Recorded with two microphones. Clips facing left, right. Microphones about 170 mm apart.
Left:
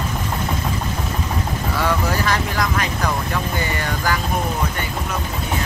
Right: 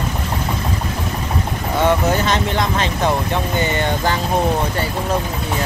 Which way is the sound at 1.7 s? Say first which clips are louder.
Right 6 dB; 25° right (ahead or behind).